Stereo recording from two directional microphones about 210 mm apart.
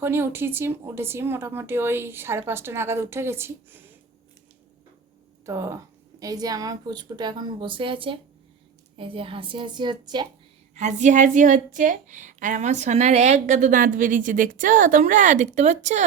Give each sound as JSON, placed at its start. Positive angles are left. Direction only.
{"t": 0.0, "sound": "speech", "side_deg": -10}
{"t": 5.5, "sound": "a woman's voice", "side_deg": -15}
{"t": 10.8, "sound": "a woman's voice", "side_deg": -35}